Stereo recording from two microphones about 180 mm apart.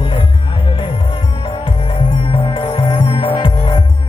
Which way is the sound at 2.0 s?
30° left (ahead or behind).